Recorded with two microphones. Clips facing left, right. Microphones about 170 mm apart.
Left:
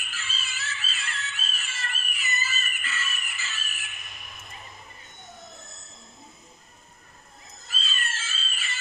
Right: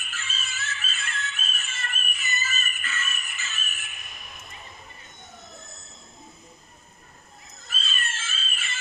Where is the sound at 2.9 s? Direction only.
30° left (ahead or behind).